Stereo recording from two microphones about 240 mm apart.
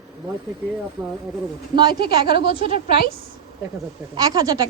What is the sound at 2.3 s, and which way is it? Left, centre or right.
Speech, right.